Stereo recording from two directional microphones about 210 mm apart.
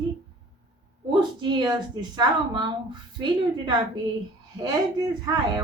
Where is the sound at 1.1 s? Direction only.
20° right (ahead or behind).